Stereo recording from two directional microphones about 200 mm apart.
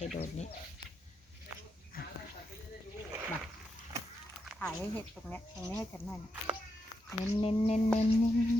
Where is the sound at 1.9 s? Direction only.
45° left (ahead or behind).